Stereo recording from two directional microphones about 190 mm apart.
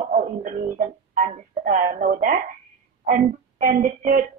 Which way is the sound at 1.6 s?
45° right (ahead or behind).